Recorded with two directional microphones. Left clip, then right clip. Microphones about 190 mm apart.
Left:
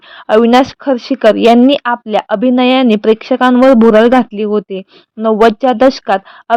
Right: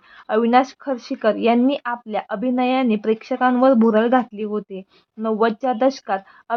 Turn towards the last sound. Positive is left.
turn(degrees=40)  # may be behind; listen again after turning